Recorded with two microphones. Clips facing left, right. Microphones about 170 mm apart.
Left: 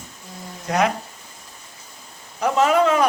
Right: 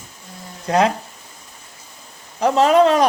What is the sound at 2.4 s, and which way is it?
Speech, 35° right (ahead or behind).